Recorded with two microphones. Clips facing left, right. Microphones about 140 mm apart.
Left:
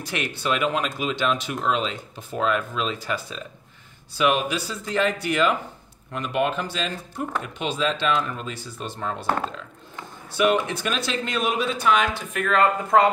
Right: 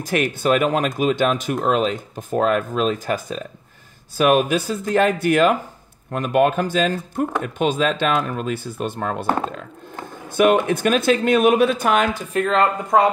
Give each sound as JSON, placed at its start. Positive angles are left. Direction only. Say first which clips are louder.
{"t": 0.0, "sound": "speech", "louder": "right 8 dB", "side_deg": -50}